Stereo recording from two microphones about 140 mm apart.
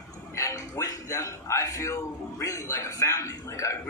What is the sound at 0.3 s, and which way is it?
Speech, 25° left (ahead or behind).